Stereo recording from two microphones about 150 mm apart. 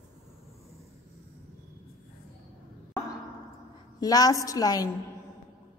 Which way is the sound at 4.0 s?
25° left (ahead or behind).